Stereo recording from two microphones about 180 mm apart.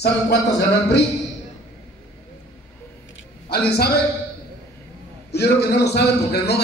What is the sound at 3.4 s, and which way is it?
Speech, 65° left (ahead or behind).